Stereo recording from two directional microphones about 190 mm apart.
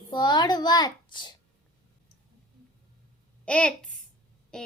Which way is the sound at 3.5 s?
5° left (ahead or behind).